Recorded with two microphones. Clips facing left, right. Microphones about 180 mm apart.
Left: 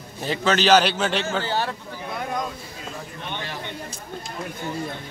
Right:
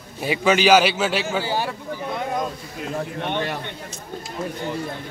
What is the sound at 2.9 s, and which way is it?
Speech, 60° right (ahead or behind).